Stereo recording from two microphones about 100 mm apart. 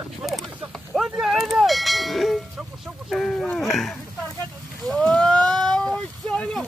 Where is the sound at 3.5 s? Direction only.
Centre (ahead or behind).